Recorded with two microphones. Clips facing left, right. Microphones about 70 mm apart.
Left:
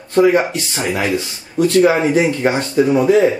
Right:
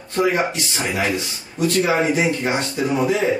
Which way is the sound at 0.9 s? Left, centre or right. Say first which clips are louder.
Left 2 dB; left.